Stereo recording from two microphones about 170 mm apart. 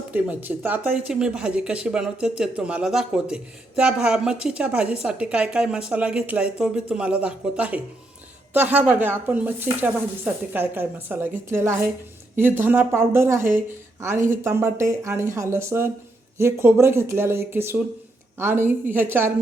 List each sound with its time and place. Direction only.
0.1 s speech: 10° right (ahead or behind)